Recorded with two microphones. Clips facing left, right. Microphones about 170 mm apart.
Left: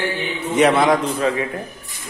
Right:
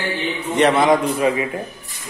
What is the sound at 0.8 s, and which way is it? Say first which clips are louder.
Speech: right 2 dB; 10° right (ahead or behind).